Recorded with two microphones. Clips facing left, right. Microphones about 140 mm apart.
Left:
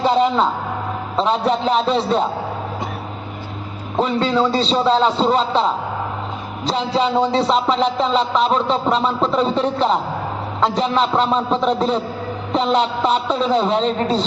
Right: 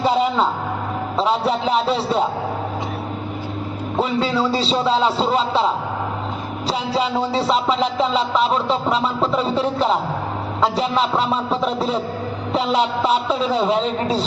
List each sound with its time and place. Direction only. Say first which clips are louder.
0.0 s a man's voice: left 2 dB; 5° right (ahead or behind)
1.1 s music: left 2 dB; 5° right (ahead or behind)
3.9 s music: left 2 dB; 5° right (ahead or behind)
10.6 s a man's voice: left 1 dB; 5° right (ahead or behind)